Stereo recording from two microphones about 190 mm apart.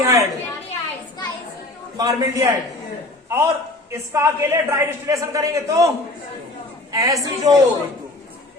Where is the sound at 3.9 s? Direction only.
15° right (ahead or behind).